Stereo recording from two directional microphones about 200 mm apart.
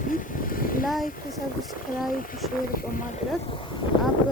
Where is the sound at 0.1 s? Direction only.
45° left (ahead or behind).